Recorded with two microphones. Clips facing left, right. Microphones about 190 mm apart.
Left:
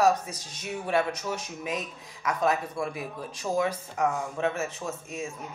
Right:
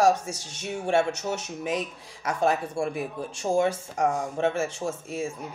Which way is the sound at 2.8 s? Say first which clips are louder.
Right 4 dB; 50° right (ahead or behind).